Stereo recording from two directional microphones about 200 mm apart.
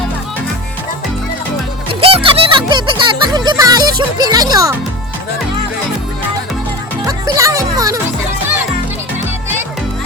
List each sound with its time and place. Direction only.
1.9 s music: 30° right (ahead or behind)
7.0 s music: 15° right (ahead or behind)